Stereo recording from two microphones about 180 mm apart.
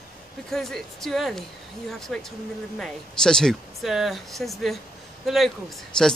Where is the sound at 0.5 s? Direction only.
Centre (ahead or behind).